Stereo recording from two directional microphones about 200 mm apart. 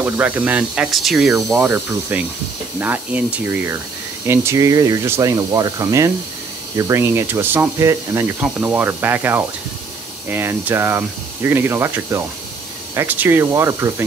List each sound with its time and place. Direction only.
0.0 s speech: 10° right (ahead or behind)